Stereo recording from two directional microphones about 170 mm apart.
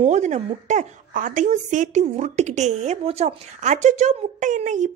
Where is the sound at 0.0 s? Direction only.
45° right (ahead or behind).